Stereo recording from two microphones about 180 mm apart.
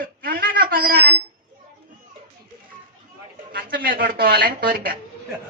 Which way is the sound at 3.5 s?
55° right (ahead or behind).